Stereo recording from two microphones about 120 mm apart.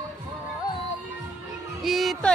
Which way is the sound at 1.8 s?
Centre (ahead or behind).